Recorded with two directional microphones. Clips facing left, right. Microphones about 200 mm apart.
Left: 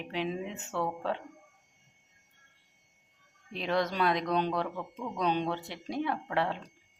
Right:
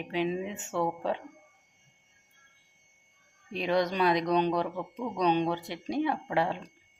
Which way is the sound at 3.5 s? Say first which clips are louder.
Right 3 dB; centre (ahead or behind).